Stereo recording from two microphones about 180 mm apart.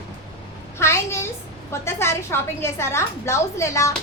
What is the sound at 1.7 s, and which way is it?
A woman's voice, 15° left (ahead or behind).